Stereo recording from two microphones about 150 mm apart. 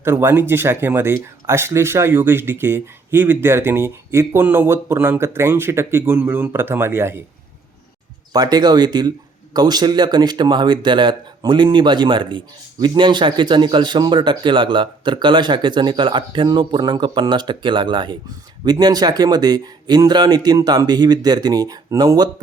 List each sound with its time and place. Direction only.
0.0 s speech: 15° right (ahead or behind)
8.3 s speech: 25° right (ahead or behind)